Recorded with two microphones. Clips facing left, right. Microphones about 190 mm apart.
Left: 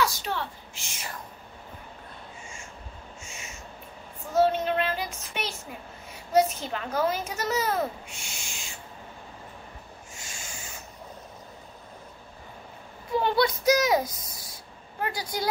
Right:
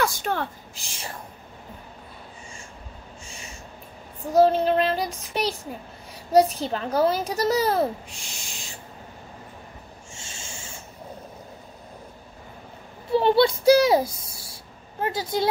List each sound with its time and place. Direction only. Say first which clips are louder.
0.0 s a woman's voice: right 3 dB; 50° right (ahead or behind)
0.7 s a child's voice: right 3 dB; 35° right (ahead or behind)
3.3 s snort: right 2 dB; 35° right (ahead or behind)
4.3 s a child's voice: right 5 dB; 35° right (ahead or behind)
10.1 s rub: right 2 dB; 25° right (ahead or behind)
13.2 s a child's voice: right 6 dB; 30° right (ahead or behind)